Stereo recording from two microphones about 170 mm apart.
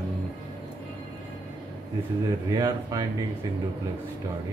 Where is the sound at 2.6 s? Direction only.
20° right (ahead or behind).